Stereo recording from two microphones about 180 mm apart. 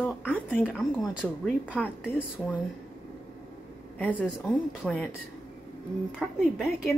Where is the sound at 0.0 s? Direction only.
10° left (ahead or behind).